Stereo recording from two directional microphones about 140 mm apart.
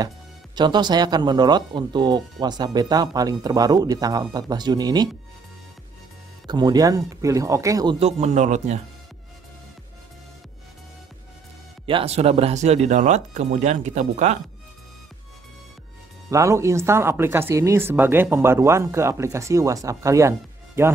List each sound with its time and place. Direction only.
0.6 s speech: 30° right (ahead or behind)
6.4 s speech: 30° right (ahead or behind)
8.0 s speech: 55° right (ahead or behind)
11.8 s speech: 40° right (ahead or behind)
16.3 s speech: 20° right (ahead or behind)